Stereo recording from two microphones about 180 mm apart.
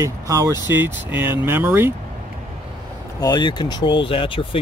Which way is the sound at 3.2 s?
25° left (ahead or behind).